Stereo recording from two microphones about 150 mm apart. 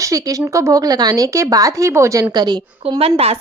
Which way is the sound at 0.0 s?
20° right (ahead or behind).